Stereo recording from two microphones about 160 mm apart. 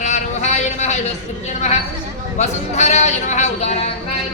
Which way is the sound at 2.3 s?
45° left (ahead or behind).